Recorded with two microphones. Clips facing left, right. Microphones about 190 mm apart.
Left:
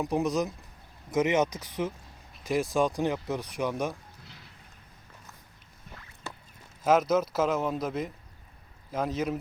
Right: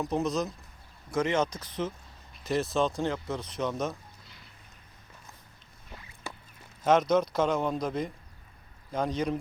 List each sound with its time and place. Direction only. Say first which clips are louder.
0.0 s speech: left 2 dB; 15° left (ahead or behind)
6.8 s a man's voice: even; 5° left (ahead or behind)